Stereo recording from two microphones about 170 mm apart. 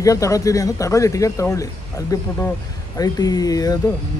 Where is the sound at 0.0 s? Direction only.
20° left (ahead or behind).